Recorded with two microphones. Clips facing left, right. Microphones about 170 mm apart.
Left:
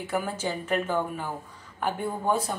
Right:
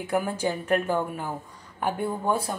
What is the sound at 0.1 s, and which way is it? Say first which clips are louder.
A woman's voice: right 4 dB; 10° right (ahead or behind).